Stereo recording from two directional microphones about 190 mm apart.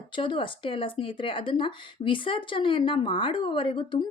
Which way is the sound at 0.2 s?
25° left (ahead or behind).